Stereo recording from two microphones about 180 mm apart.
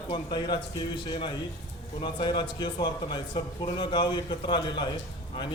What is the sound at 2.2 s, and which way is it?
Speech, 25° left (ahead or behind).